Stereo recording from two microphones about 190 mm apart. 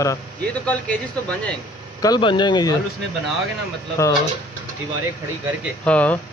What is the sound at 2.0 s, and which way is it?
Speech, 20° left (ahead or behind).